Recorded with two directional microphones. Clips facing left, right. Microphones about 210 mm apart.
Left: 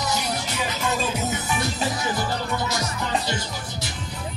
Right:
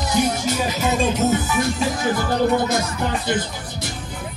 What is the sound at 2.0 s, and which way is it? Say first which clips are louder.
Speech: right 7 dB; 50° right (ahead or behind).